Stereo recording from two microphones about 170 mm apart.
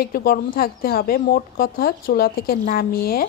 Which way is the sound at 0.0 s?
60° left (ahead or behind).